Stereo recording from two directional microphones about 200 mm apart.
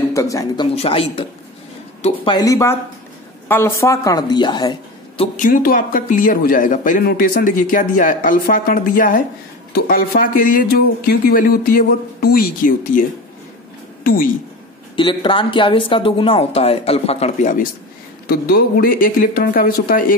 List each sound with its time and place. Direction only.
0.1 s speech: 15° left (ahead or behind)
0.8 s speech: 30° left (ahead or behind)
2.3 s a woman's voice: 15° left (ahead or behind)
5.4 s a man's voice: 45° left (ahead or behind)
14.0 s speech: 45° left (ahead or behind)
15.0 s a man's voice: 25° left (ahead or behind); by 20.2 s 45° left (ahead or behind)